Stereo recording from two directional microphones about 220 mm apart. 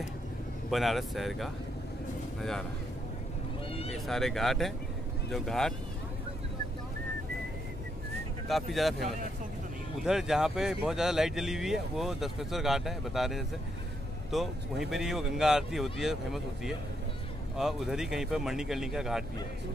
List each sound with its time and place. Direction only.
0.7 s speech: centre (ahead or behind)
3.7 s speech: 25° left (ahead or behind)
4.1 s speech: centre (ahead or behind)
8.5 s speech: centre (ahead or behind)